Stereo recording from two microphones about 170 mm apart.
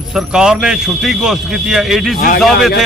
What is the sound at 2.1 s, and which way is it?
Speech, 55° left (ahead or behind).